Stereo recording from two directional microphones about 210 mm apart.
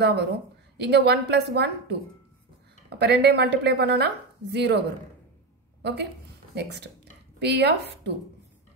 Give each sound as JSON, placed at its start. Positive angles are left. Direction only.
{"t": 0.0, "sound": "a woman's voice", "side_deg": -50}
{"t": 5.8, "sound": "a sound", "side_deg": -55}
{"t": 6.5, "sound": "a woman's voice", "side_deg": -55}